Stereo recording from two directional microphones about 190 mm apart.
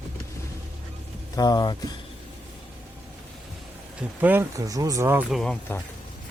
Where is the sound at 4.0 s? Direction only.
10° right (ahead or behind).